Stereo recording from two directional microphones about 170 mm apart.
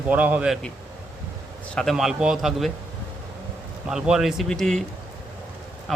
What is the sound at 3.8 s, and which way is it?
A man's voice, 5° right (ahead or behind).